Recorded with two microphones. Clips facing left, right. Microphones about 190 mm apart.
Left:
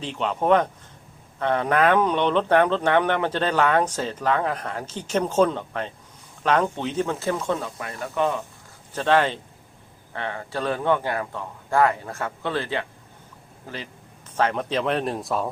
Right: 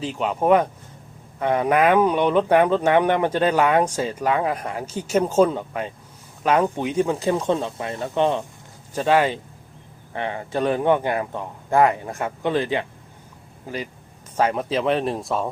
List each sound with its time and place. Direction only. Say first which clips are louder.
0.0 s speech: right 3 dB; 10° right (ahead or behind)
7.4 s speech: right 4 dB; 25° right (ahead or behind)
8.9 s speech: right 2 dB; 10° right (ahead or behind)